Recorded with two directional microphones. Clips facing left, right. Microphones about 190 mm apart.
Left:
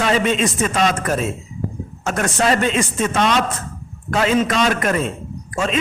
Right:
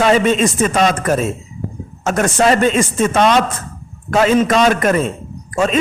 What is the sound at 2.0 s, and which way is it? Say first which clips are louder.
A man's voice: right 5 dB; 45° right (ahead or behind).